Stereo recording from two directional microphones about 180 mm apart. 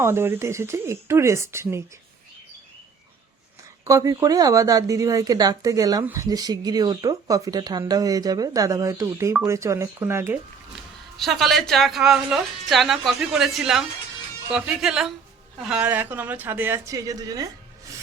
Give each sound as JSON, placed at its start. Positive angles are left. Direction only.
{"t": 0.0, "sound": "a woman's voice", "side_deg": -15}
{"t": 3.8, "sound": "a woman's voice", "side_deg": -20}
{"t": 11.2, "sound": "a woman's voice", "side_deg": 0}